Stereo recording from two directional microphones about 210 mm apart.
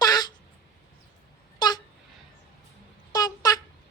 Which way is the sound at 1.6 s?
20° left (ahead or behind).